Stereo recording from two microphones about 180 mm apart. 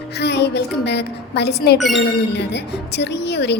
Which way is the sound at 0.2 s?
70° left (ahead or behind).